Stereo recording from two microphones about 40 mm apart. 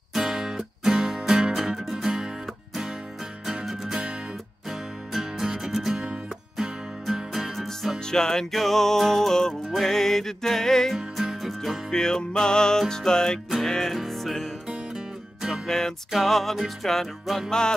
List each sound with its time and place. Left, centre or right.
0.1 s music: centre
1.8 s music: centre
2.0 s music: centre
3.6 s music: centre
7.5 s music: centre
8.0 s music: centre
8.5 s music: centre
11.4 s music: centre
11.9 s music: centre
15.0 s music: centre
16.1 s music: centre
17.5 s music: centre